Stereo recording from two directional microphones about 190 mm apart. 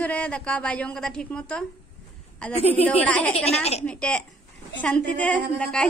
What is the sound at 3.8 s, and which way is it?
A woman's voice, 5° left (ahead or behind).